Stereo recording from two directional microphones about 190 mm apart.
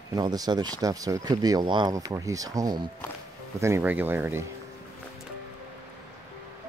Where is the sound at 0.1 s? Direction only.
20° right (ahead or behind).